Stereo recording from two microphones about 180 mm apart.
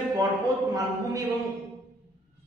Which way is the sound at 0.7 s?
20° right (ahead or behind).